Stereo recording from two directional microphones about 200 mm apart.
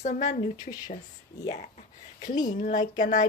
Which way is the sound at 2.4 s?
40° left (ahead or behind).